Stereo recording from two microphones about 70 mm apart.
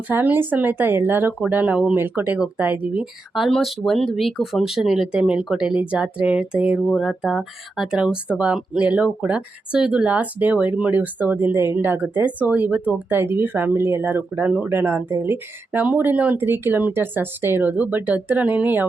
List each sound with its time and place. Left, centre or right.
0.1 s speech: right
2.0 s speech: right
3.0 s speech: centre
6.9 s speech: centre; by 18.9 s right